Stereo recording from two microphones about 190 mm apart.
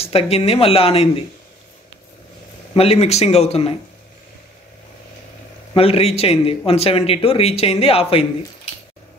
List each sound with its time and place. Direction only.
0.0 s speech: 30° left (ahead or behind)
2.7 s speech: 30° left (ahead or behind)
5.8 s speech: 30° left (ahead or behind)